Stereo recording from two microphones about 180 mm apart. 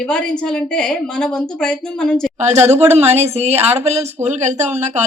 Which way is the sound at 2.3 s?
40° right (ahead or behind).